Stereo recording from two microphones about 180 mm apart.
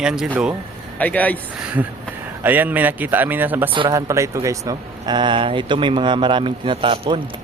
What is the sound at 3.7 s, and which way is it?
Speech, 25° right (ahead or behind).